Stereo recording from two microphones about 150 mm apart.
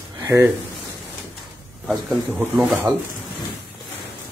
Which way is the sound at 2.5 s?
Centre (ahead or behind).